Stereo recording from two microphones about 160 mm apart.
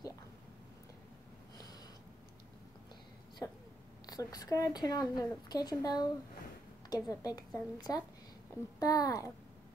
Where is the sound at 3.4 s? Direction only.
20° left (ahead or behind).